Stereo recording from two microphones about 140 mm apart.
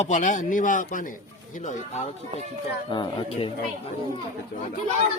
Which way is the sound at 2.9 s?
35° left (ahead or behind).